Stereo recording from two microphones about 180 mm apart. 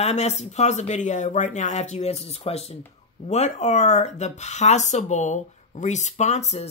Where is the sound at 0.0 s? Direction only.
40° left (ahead or behind).